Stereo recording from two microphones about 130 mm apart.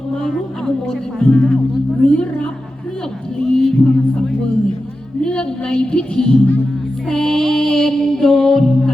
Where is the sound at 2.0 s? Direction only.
5° left (ahead or behind).